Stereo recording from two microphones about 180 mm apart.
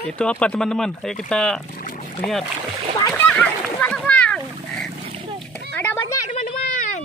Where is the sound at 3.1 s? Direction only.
10° left (ahead or behind).